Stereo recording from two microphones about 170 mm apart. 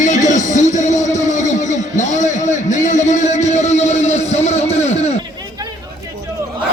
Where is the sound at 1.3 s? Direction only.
45° left (ahead or behind).